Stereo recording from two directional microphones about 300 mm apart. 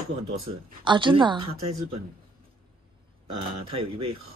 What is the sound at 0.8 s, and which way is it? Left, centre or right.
Speech, centre.